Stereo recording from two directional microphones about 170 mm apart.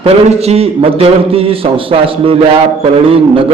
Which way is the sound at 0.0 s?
40° right (ahead or behind).